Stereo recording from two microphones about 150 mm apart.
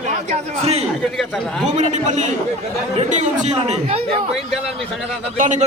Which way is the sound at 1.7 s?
50° right (ahead or behind).